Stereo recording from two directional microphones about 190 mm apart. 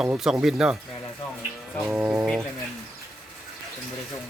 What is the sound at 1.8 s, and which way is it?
Speech, 5° right (ahead or behind).